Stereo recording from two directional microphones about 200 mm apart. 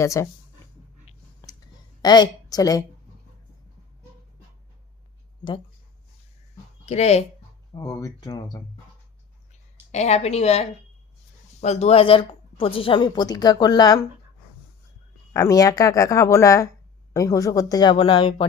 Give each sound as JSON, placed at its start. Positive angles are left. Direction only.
{"t": 0.0, "sound": "speech", "side_deg": 15}
{"t": 2.0, "sound": "a woman's voice", "side_deg": 20}
{"t": 6.8, "sound": "a woman's voice", "side_deg": 30}
{"t": 7.7, "sound": "speech", "side_deg": 15}
{"t": 9.9, "sound": "a woman's voice", "side_deg": 35}
{"t": 15.3, "sound": "a woman's voice", "side_deg": 15}